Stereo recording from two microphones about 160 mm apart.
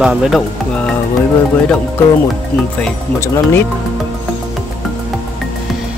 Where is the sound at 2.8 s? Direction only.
15° left (ahead or behind).